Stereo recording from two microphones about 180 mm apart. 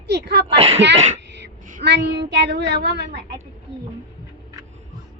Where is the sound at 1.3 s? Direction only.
80° right.